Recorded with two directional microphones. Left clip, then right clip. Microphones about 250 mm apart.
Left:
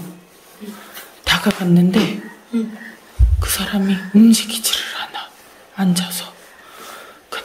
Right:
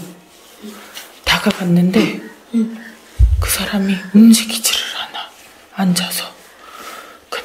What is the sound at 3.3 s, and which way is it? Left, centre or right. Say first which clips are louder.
Whispering: right 2 dB; centre.